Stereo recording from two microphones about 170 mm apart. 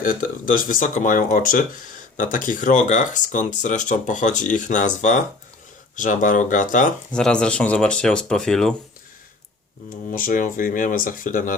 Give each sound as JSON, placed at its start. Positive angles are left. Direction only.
{"t": 0.0, "sound": "speech", "side_deg": 55}
{"t": 7.1, "sound": "speech", "side_deg": 5}
{"t": 10.1, "sound": "speech", "side_deg": 55}